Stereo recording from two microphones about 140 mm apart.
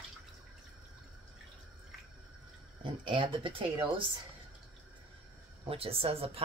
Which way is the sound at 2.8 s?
35° right (ahead or behind).